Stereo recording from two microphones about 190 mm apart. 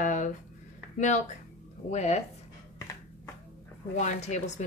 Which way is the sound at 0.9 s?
40° left (ahead or behind).